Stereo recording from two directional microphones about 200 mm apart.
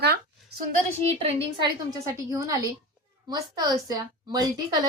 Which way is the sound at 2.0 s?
15° right (ahead or behind).